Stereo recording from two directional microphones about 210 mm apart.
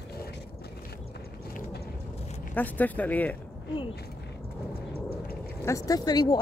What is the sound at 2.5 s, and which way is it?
Speech, 10° left (ahead or behind).